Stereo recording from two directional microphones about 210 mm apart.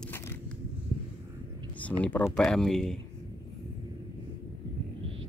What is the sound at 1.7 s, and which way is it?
A man's voice, 5° left (ahead or behind).